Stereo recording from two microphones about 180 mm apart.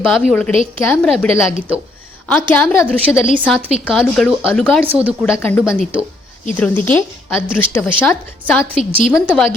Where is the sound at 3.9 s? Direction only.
Centre (ahead or behind).